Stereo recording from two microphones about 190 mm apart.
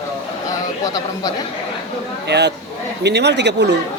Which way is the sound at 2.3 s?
65° right (ahead or behind).